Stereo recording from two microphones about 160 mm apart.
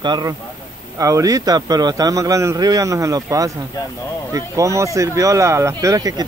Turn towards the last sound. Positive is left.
turn(degrees=-25)  # may be behind; listen again after turning